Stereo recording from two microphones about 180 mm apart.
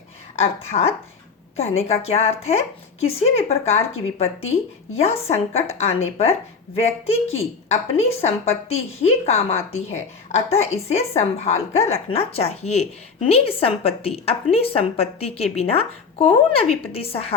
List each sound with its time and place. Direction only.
0.3 s a woman's voice: 35° left (ahead or behind)